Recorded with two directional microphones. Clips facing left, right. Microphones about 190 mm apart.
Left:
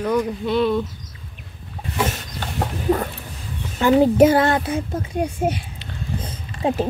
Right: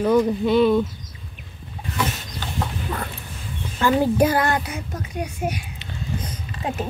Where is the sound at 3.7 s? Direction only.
20° left (ahead or behind).